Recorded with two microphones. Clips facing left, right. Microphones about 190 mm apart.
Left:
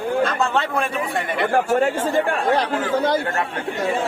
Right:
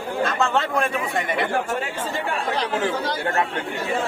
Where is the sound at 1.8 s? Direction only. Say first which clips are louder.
Left 8 dB; 55° left (ahead or behind).